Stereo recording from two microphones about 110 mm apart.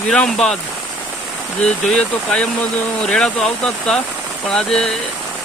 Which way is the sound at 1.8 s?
10° left (ahead or behind).